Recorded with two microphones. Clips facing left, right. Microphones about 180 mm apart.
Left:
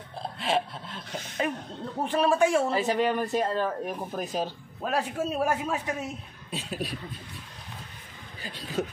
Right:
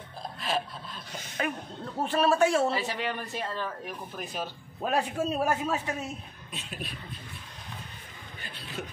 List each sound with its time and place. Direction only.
0.2 s a sound: 25° left (ahead or behind)
2.0 s a man's voice: 15° left (ahead or behind)
2.7 s speech: 45° left (ahead or behind)
4.9 s a man's voice: 10° left (ahead or behind)
6.5 s speech: 35° left (ahead or behind)
8.5 s speech: 40° left (ahead or behind)